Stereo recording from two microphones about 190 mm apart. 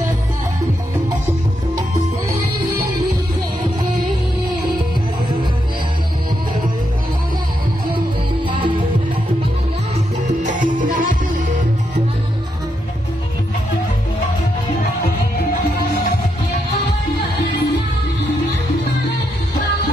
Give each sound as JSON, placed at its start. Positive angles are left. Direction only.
{"t": 8.5, "sound": "music", "side_deg": -25}
{"t": 10.2, "sound": "music", "side_deg": -40}